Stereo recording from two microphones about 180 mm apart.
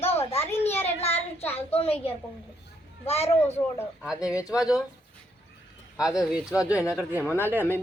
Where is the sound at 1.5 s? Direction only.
35° left (ahead or behind).